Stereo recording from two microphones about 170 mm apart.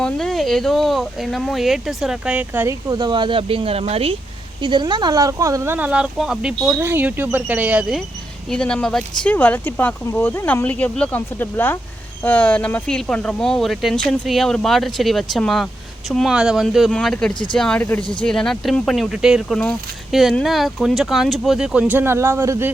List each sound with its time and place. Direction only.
0.0 s speech: 5° left (ahead or behind)
2.9 s speech: 25° right (ahead or behind)